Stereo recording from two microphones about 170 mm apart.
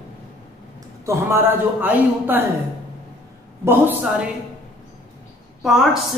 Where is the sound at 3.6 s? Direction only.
10° right (ahead or behind).